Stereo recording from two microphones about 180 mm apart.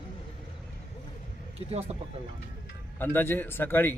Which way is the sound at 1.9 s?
30° right (ahead or behind).